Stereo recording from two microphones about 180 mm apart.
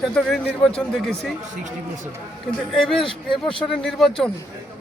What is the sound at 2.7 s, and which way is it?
Speech, centre (ahead or behind).